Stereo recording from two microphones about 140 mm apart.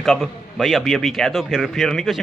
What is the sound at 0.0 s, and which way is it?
A man's voice, 5° left (ahead or behind).